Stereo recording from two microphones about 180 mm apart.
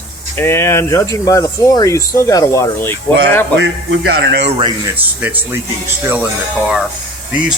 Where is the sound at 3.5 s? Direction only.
85° right.